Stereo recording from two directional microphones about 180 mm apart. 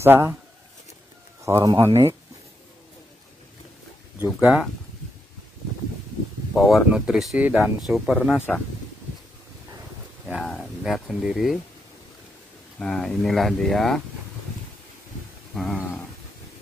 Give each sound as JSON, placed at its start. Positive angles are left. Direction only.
{"t": 0.0, "sound": "speech", "side_deg": -10}
{"t": 1.4, "sound": "speech", "side_deg": -20}
{"t": 4.4, "sound": "speech", "side_deg": -5}
{"t": 6.5, "sound": "speech", "side_deg": 0}
{"t": 10.2, "sound": "speech", "side_deg": 0}
{"t": 12.7, "sound": "speech", "side_deg": 5}
{"t": 15.5, "sound": "a sound", "side_deg": 0}